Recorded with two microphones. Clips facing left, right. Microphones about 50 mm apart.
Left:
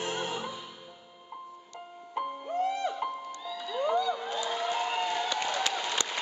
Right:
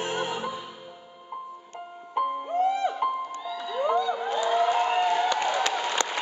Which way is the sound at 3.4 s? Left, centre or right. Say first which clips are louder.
Right 3 dB; centre.